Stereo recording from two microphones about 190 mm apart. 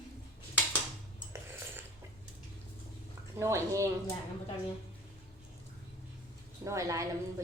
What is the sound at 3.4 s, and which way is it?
Speech, 15° right (ahead or behind).